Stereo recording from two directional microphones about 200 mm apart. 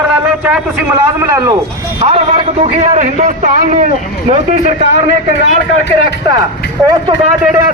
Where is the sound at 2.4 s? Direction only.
30° right (ahead or behind).